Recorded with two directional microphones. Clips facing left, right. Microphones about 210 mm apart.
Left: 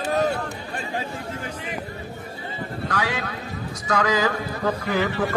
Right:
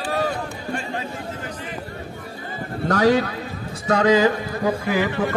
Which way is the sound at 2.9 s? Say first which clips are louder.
Right 11 dB; 40° right (ahead or behind).